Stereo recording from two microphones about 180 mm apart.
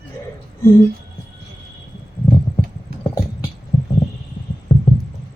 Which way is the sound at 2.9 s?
60° right (ahead or behind).